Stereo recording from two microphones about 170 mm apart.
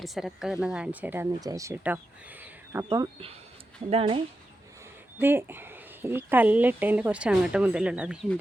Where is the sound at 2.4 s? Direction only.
15° right (ahead or behind).